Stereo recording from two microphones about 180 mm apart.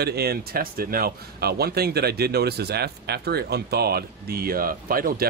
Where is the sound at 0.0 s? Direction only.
60° right (ahead or behind).